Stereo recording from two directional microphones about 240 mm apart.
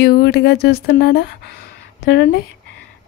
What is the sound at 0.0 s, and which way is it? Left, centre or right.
Speech, left.